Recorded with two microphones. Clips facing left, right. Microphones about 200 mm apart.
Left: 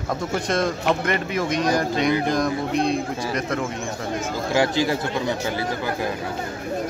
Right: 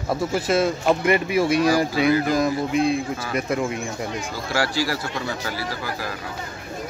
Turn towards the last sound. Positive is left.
turn(degrees=20)  # may be behind; listen again after turning